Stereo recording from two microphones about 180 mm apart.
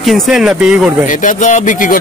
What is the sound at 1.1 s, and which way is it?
Speech, 45° left (ahead or behind).